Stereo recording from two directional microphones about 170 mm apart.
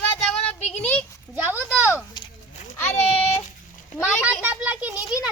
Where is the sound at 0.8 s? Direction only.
10° left (ahead or behind).